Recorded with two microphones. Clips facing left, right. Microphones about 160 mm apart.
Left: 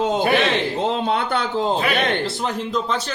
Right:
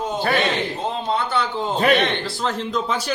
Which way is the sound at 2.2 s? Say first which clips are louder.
Left 1 dB; 20° left (ahead or behind).